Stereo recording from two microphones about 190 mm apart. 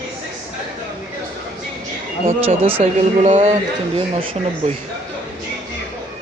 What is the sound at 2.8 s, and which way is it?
Speech, 40° right (ahead or behind).